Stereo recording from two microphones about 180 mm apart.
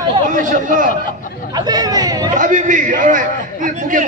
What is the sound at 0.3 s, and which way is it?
Speech, 45° right (ahead or behind).